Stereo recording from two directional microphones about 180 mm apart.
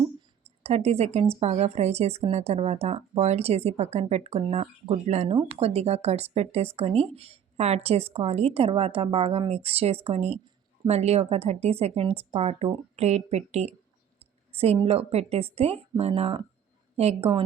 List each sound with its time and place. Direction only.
0.6 s speech: 35° right (ahead or behind)
14.2 s a sound: 35° right (ahead or behind)
14.8 s speech: 35° right (ahead or behind)